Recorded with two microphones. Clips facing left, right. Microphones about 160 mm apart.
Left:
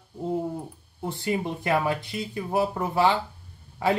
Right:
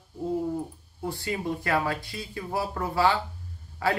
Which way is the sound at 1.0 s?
20° left (ahead or behind).